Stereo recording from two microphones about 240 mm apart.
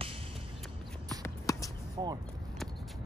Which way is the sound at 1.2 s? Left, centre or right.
Centre.